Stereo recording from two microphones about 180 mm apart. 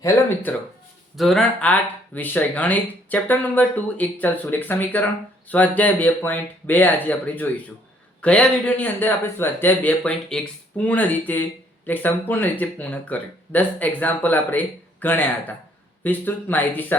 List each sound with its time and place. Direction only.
1.1 s speech: centre (ahead or behind)